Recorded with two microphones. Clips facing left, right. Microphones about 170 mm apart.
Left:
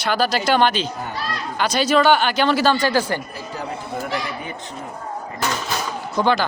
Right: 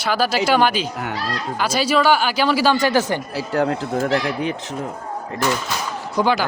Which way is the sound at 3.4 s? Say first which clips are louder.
Right 9 dB; 85° right.